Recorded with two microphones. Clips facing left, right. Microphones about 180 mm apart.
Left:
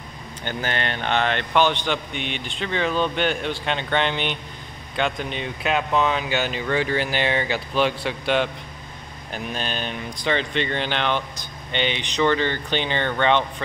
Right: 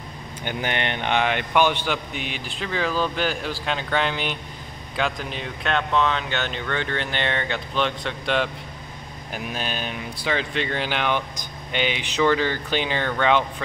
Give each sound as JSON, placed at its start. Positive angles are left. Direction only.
{"t": 0.4, "sound": "a man's voice", "side_deg": -15}
{"t": 9.3, "sound": "a man's voice", "side_deg": -5}